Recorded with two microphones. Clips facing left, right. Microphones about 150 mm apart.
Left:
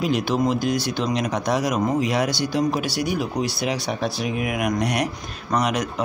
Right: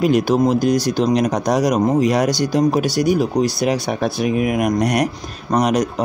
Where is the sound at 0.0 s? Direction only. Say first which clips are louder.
Right 6 dB; 45° right (ahead or behind).